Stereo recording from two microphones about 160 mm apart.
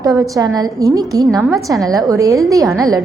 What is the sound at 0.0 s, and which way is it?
A woman's voice, 25° right (ahead or behind).